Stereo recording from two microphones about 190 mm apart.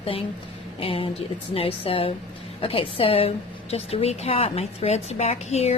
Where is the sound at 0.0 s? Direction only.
30° left (ahead or behind).